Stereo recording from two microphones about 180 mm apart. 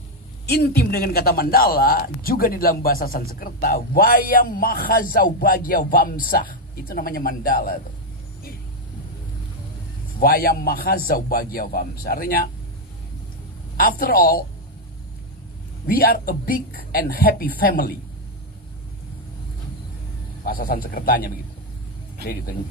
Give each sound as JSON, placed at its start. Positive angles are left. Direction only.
{"t": 0.5, "sound": "a man's voice", "side_deg": 55}
{"t": 10.1, "sound": "a man's voice", "side_deg": 55}
{"t": 13.7, "sound": "a man's voice", "side_deg": 55}
{"t": 15.9, "sound": "a man's voice", "side_deg": 55}
{"t": 20.4, "sound": "a man's voice", "side_deg": 55}